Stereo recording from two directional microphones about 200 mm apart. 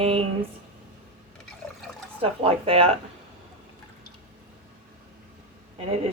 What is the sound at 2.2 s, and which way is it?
Speech, 30° right (ahead or behind).